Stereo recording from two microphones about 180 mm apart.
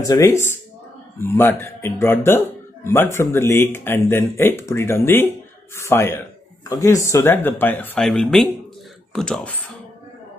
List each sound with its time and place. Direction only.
0.0 s a man's voice: 20° left (ahead or behind)